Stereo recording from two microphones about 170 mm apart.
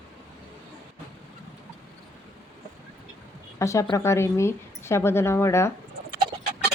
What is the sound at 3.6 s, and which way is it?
Speech, 20° left (ahead or behind).